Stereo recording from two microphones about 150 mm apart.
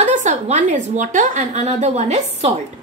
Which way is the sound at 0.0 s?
55° right (ahead or behind).